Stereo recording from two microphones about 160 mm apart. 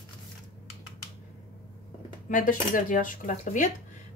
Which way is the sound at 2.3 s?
60° left (ahead or behind).